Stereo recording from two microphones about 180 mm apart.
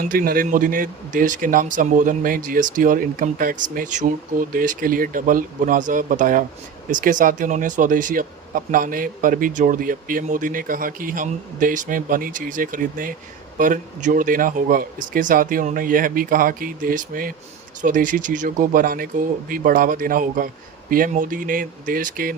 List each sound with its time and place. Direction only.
0.1 s speech: 55° right (ahead or behind)